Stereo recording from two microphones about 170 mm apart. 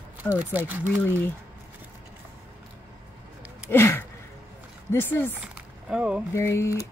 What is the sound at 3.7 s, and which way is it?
Gasp, 15° left (ahead or behind).